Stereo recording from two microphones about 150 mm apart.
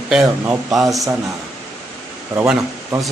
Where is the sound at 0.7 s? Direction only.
Centre (ahead or behind).